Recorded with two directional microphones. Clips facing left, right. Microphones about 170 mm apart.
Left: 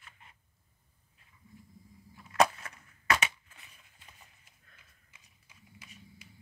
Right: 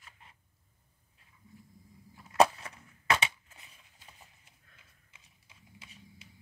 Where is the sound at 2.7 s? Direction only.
30° right (ahead or behind).